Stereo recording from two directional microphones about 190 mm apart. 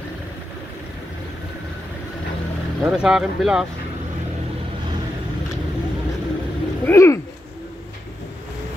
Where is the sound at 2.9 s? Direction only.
5° right (ahead or behind).